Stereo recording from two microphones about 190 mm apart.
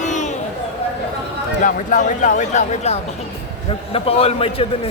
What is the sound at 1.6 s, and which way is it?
Speech, 45° left (ahead or behind).